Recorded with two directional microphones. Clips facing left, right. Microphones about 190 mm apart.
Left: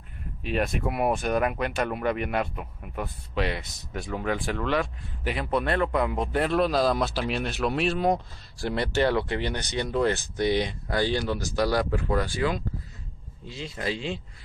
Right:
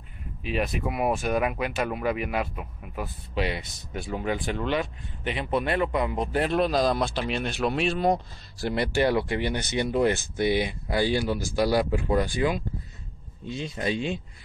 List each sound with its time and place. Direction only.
0.4 s speech: centre (ahead or behind)
8.6 s speech: 10° right (ahead or behind)